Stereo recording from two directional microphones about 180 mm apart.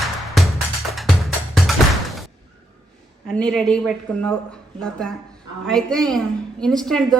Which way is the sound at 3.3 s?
5° left (ahead or behind).